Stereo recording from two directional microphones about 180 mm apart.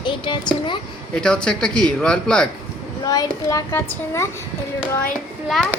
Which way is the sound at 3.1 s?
20° left (ahead or behind).